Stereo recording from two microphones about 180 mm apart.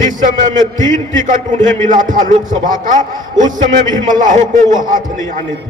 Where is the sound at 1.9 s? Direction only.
45° right (ahead or behind).